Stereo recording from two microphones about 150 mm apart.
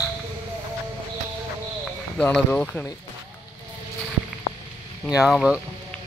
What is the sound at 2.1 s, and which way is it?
Speech, 5° left (ahead or behind).